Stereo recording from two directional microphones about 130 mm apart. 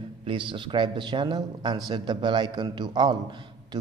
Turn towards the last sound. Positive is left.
turn(degrees=-35)  # may be behind; listen again after turning